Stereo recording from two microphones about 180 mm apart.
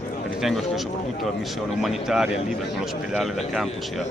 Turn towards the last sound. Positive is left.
turn(degrees=0)  # may be behind; listen again after turning